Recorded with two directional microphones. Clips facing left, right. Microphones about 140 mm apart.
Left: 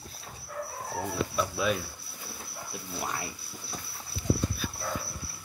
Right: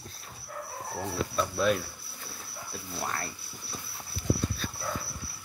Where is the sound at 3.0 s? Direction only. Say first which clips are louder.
Even; 10° left (ahead or behind).